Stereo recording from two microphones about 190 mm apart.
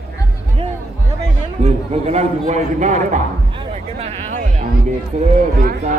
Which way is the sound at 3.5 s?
30° right (ahead or behind).